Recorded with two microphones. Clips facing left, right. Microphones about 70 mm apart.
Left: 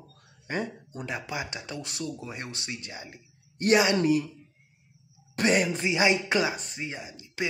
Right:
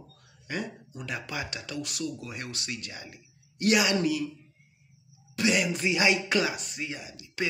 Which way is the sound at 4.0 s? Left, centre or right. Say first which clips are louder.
Left 4 dB; left.